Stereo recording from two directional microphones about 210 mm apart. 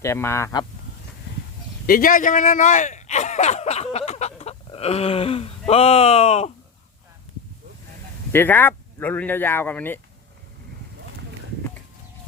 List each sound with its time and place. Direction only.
0.0 s speech: 15° left (ahead or behind)
1.9 s speech: 40° left (ahead or behind)
8.3 s speech: 10° left (ahead or behind)